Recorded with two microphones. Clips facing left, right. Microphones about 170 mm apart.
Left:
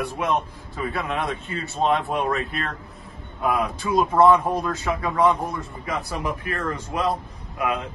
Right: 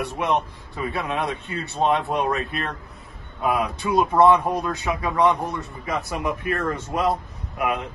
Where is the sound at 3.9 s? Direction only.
Centre (ahead or behind).